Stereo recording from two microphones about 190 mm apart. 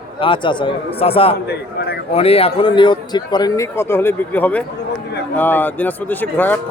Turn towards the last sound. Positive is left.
turn(degrees=10)  # may be behind; listen again after turning